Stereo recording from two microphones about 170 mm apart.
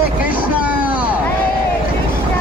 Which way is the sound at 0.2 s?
10° right (ahead or behind).